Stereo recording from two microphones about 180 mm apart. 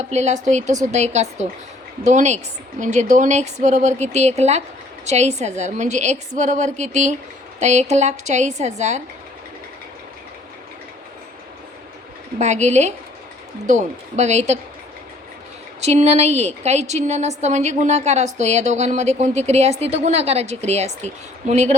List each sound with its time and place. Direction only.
0.1 s a woman's voice: 40° right (ahead or behind)
12.4 s a woman's voice: 40° right (ahead or behind)
15.8 s a woman's voice: 35° right (ahead or behind)